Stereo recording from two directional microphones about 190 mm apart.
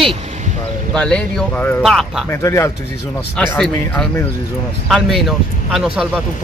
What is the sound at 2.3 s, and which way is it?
Speech, 15° left (ahead or behind).